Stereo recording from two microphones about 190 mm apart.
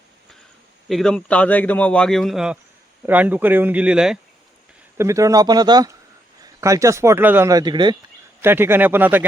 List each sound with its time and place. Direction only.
0.9 s a man's voice: centre (ahead or behind)
4.9 s speech: 15° right (ahead or behind)
8.4 s speech: 10° right (ahead or behind)